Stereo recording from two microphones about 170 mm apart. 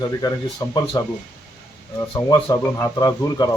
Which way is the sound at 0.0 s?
20° left (ahead or behind).